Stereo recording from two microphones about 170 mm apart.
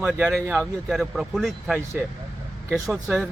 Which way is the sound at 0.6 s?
Centre (ahead or behind).